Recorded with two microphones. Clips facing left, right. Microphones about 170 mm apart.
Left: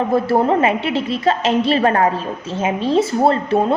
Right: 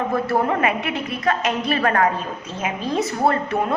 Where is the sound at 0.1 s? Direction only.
30° left (ahead or behind).